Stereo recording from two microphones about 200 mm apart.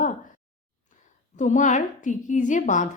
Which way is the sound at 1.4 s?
40° left (ahead or behind).